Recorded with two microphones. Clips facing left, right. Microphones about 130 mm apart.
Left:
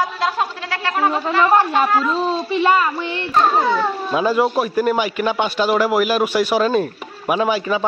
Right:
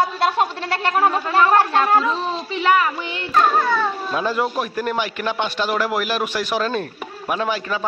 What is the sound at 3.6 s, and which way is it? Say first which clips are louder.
Speech: left 2 dB; 20° left (ahead or behind).